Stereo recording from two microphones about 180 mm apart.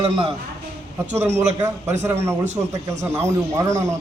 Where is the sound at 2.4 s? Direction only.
40° right (ahead or behind).